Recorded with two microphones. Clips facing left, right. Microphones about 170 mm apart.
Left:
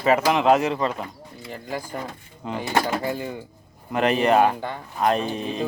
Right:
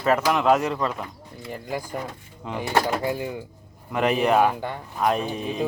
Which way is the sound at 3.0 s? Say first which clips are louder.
Right 1 dB; 10° right (ahead or behind).